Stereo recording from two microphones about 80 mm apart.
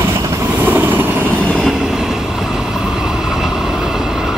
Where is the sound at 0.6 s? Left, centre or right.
Right.